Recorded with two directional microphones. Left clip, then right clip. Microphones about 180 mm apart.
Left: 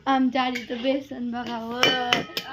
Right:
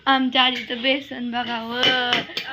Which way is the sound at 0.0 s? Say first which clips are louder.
Right 5 dB; 10° left (ahead or behind).